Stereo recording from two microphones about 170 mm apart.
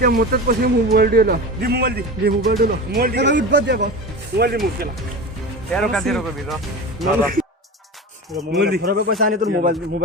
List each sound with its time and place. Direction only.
0.0 s speech: 65° right (ahead or behind); by 3.8 s 80° right
4.4 s speech: 65° right (ahead or behind)
5.7 s speech: centre (ahead or behind)
7.2 s speech: 55° right (ahead or behind)
8.5 s speech: 75° right (ahead or behind)